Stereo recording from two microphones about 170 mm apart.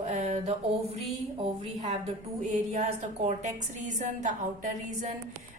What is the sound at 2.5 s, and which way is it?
Speech, 45° right (ahead or behind).